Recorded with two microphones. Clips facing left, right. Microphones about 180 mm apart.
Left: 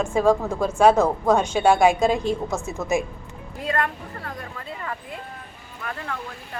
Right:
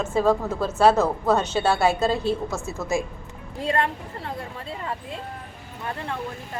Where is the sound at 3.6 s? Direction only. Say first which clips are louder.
Right 1 dB; 25° right (ahead or behind).